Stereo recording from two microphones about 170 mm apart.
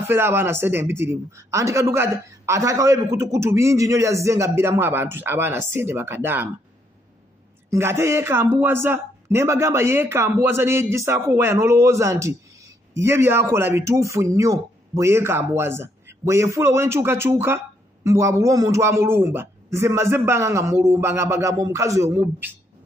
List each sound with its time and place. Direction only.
0.0 s a man's voice: 10° right (ahead or behind)
7.7 s a man's voice: 15° right (ahead or behind)